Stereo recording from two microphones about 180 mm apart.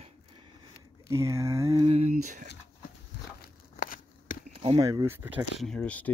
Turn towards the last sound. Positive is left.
turn(degrees=5)  # may be behind; listen again after turning